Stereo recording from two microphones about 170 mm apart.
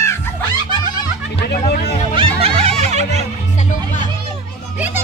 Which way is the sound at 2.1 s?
35° right (ahead or behind).